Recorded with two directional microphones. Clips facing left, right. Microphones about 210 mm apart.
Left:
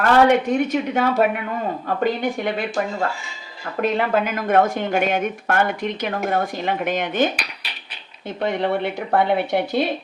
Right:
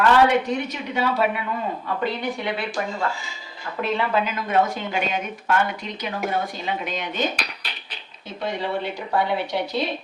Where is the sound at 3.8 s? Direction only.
50° left (ahead or behind).